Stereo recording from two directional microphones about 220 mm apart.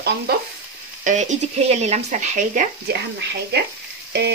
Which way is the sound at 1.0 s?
35° right (ahead or behind).